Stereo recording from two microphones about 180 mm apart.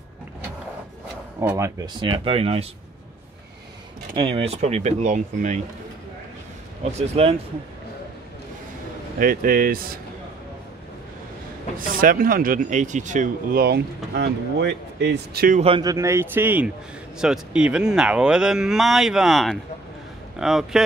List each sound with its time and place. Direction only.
1.4 s speech: 15° right (ahead or behind)
2.0 s speech: 25° right (ahead or behind)
4.1 s speech: 30° right (ahead or behind)
7.0 s speech: 35° right (ahead or behind)
9.2 s speech: 55° right (ahead or behind)
11.8 s speech: 50° right (ahead or behind)
15.6 s speech: 25° right (ahead or behind); by 20.8 s centre (ahead or behind)